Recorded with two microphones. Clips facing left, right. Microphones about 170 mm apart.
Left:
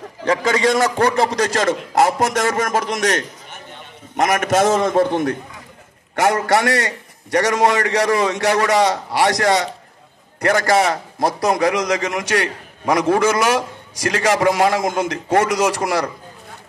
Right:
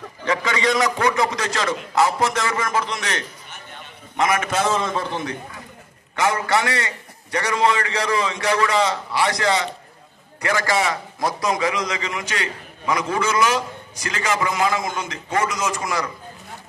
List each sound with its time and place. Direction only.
0.2 s a man's voice: 45° left (ahead or behind)
12.9 s a man's voice: 65° left (ahead or behind)